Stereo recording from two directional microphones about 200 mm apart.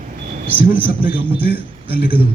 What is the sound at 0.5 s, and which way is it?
A man's voice, 10° right (ahead or behind).